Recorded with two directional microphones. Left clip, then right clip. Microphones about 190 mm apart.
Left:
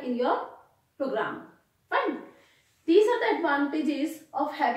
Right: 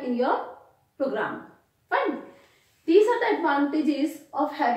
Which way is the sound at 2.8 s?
15° right (ahead or behind).